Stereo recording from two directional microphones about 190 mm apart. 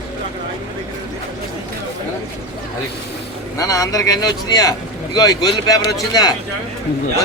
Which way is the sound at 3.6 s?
20° left (ahead or behind).